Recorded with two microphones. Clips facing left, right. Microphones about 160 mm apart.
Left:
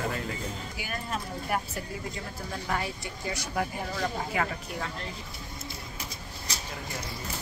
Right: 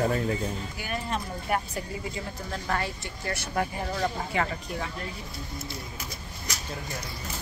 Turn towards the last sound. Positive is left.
turn(degrees=30)  # may be behind; listen again after turning